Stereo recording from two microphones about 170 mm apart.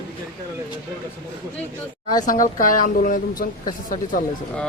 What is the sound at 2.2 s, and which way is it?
A woman's voice, 55° left (ahead or behind).